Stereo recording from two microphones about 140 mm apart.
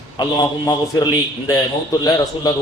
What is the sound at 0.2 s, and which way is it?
A man's voice, 25° left (ahead or behind).